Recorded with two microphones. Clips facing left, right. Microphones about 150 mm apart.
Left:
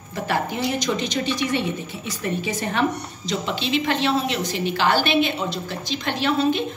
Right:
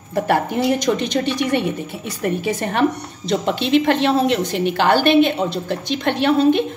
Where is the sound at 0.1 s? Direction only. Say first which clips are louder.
Right 6 dB; 55° right (ahead or behind).